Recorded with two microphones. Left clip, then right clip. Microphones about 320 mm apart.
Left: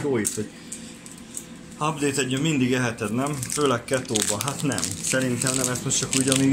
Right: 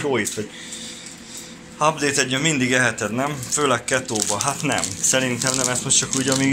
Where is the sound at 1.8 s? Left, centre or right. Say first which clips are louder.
Right 6 dB; centre.